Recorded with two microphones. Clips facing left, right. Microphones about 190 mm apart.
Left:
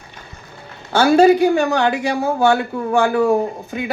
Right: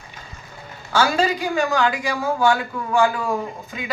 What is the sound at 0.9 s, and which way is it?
A woman's voice, 60° left (ahead or behind).